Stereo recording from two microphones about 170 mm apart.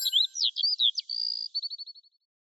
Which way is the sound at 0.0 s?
Centre (ahead or behind).